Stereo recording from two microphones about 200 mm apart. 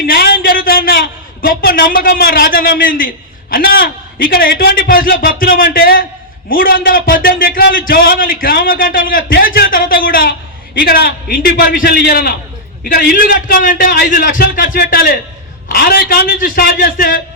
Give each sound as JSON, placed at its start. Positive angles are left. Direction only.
{"t": 0.0, "sound": "a man's voice", "side_deg": 50}